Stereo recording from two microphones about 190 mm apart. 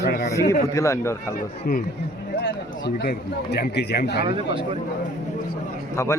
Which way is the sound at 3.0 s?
60° left (ahead or behind).